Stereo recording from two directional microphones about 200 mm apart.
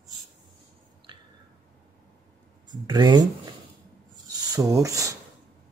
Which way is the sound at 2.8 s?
20° right (ahead or behind).